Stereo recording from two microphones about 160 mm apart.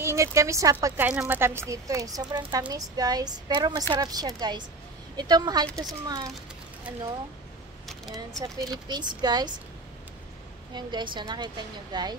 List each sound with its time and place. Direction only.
0.0 s speech: 20° right (ahead or behind)
7.9 s speech: 5° left (ahead or behind)
8.4 s speech: 25° right (ahead or behind)
10.7 s speech: 25° right (ahead or behind)